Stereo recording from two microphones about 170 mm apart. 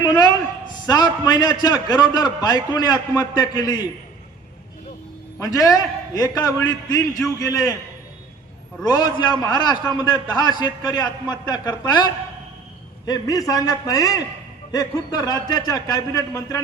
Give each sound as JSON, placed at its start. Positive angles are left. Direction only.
{"t": 0.0, "sound": "a sound", "side_deg": 25}
{"t": 0.9, "sound": "a man's voice", "side_deg": 25}
{"t": 5.4, "sound": "a man's voice", "side_deg": 20}
{"t": 8.8, "sound": "a man's voice", "side_deg": 25}